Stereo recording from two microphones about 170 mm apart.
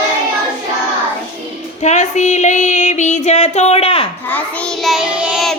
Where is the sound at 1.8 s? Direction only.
45° left (ahead or behind).